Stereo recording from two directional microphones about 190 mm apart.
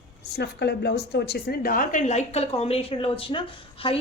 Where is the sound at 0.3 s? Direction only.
60° left (ahead or behind).